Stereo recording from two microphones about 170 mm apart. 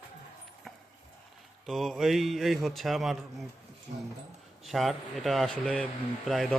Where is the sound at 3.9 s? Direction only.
55° right (ahead or behind).